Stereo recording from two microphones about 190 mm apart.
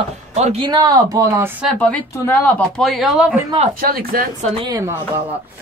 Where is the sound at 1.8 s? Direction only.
5° left (ahead or behind).